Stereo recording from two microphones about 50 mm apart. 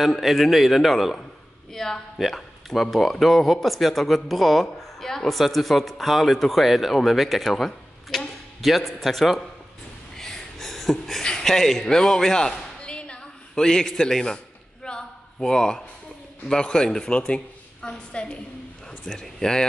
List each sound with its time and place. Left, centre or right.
0.2 s speech: centre
10.1 s a sound: centre
16.4 s a woman's voice: centre
19.2 s speech: centre